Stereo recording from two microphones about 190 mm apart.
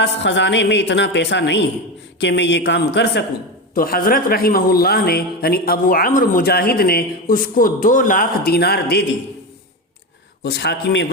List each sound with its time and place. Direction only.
0.0 s speech: 70° left (ahead or behind)
3.8 s speech: 50° left (ahead or behind)
10.4 s a man's voice: 60° left (ahead or behind)